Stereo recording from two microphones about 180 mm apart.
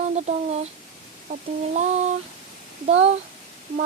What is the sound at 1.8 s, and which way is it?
Speech, 40° right (ahead or behind).